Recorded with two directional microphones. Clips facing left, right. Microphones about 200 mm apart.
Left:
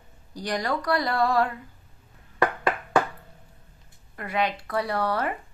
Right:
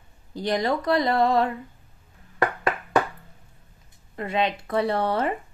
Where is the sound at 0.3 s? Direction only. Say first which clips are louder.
Right 4 dB; 20° right (ahead or behind).